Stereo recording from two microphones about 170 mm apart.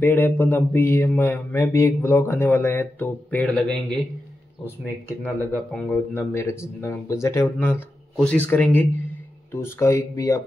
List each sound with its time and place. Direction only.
0.0 s mantra: 10° left (ahead or behind)
5.2 s mantra: 10° left (ahead or behind)